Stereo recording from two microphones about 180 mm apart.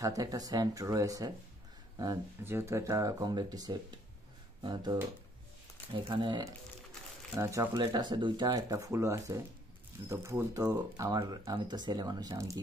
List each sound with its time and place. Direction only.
0.0 s speech: 20° right (ahead or behind)
6.0 s speech: 25° right (ahead or behind)